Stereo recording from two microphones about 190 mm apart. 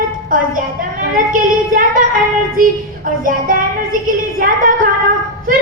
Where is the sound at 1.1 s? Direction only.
45° right (ahead or behind).